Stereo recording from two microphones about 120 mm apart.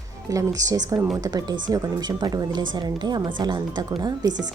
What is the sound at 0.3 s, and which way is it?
A woman's voice, 30° right (ahead or behind).